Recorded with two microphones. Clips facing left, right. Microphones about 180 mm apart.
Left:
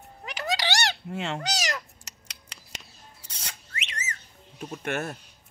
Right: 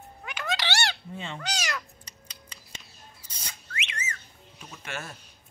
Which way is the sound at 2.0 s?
75° left (ahead or behind).